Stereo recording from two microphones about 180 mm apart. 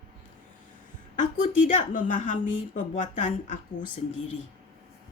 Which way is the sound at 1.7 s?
45° left (ahead or behind).